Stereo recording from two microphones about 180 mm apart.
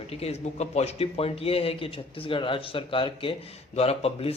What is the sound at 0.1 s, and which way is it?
Speech, 35° left (ahead or behind).